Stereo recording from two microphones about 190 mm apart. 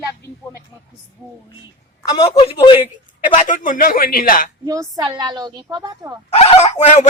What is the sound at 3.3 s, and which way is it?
Speech, 40° left (ahead or behind).